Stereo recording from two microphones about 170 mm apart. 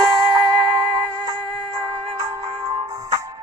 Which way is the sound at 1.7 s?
20° right (ahead or behind).